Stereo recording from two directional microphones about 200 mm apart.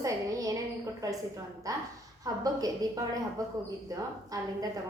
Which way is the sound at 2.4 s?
20° right (ahead or behind).